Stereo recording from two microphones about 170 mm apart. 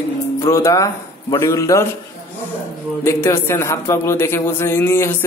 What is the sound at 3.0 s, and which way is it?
Speech, 15° left (ahead or behind).